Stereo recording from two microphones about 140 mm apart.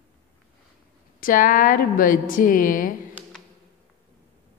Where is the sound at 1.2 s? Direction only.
75° left (ahead or behind).